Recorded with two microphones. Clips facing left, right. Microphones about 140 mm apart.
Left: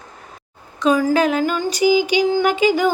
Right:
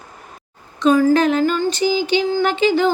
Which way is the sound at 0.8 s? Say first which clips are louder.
Right 2 dB; 10° left (ahead or behind).